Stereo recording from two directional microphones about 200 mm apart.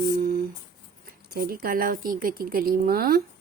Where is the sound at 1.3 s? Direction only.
50° right (ahead or behind).